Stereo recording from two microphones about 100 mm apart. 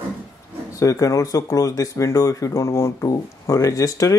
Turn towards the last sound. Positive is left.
turn(degrees=35)  # may be behind; listen again after turning